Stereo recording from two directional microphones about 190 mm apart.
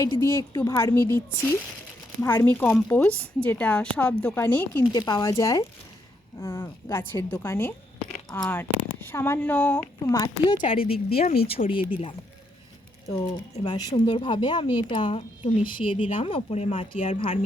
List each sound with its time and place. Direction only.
0.2 s speech: 15° left (ahead or behind)
10.2 s speech: 25° left (ahead or behind)
13.1 s speech: 20° left (ahead or behind)